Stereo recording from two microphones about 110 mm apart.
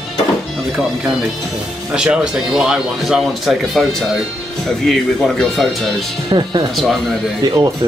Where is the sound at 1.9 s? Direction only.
10° right (ahead or behind).